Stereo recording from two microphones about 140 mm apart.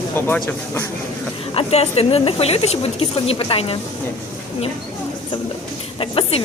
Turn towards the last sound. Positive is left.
turn(degrees=40)  # may be behind; listen again after turning